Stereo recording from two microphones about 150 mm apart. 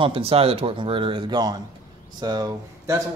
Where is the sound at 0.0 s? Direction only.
40° right (ahead or behind).